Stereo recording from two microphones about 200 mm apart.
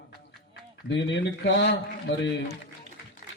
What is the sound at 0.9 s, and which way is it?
A man's voice, 65° left (ahead or behind).